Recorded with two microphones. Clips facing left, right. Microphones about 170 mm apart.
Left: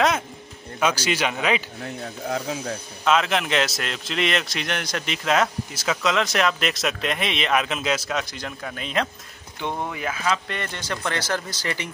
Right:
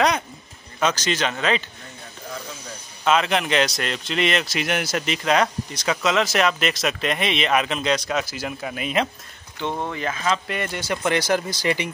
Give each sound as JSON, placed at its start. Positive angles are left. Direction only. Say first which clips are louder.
{"t": 0.7, "sound": "speech", "louder": "even", "side_deg": 10}
{"t": 1.8, "sound": "speech", "louder": "left 9 dB", "side_deg": 75}
{"t": 3.1, "sound": "speech", "louder": "right 1 dB", "side_deg": 0}
{"t": 9.6, "sound": "speech", "louder": "right 2 dB", "side_deg": 10}